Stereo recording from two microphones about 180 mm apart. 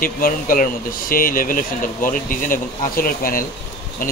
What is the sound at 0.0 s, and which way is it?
Speech, 50° left (ahead or behind).